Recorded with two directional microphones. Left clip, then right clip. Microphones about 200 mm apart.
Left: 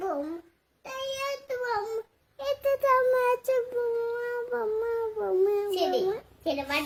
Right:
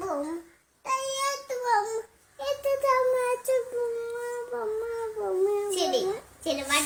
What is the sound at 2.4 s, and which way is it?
Child singing, 25° left (ahead or behind).